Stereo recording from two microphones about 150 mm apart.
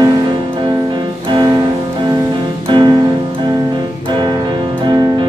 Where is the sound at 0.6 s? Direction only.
30° right (ahead or behind).